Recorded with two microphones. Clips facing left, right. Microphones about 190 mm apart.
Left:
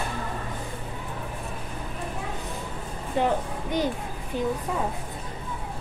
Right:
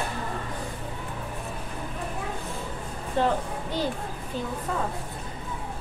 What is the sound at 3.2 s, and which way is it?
Speech, 15° left (ahead or behind).